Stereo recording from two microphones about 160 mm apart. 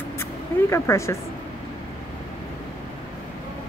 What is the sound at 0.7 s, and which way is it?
Speech, 15° left (ahead or behind).